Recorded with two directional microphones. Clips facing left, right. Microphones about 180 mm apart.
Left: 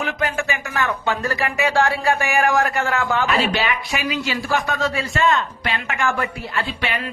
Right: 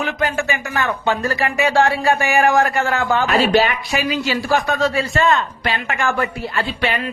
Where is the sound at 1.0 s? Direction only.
30° right (ahead or behind).